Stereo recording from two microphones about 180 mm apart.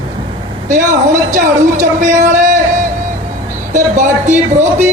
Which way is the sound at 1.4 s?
45° right (ahead or behind).